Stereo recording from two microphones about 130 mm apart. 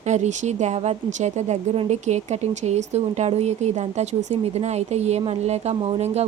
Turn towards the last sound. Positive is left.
turn(degrees=-55)  # may be behind; listen again after turning